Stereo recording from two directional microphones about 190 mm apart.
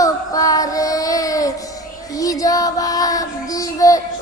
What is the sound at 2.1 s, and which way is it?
Child singing, 20° left (ahead or behind).